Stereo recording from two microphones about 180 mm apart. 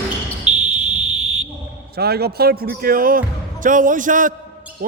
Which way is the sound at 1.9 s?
60° right (ahead or behind).